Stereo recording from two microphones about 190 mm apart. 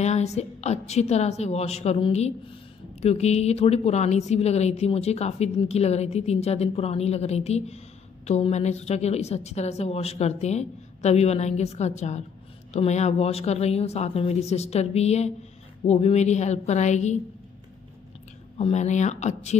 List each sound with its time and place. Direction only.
0.0 s a woman's voice: 35° left (ahead or behind)
18.6 s a woman's voice: 35° left (ahead or behind)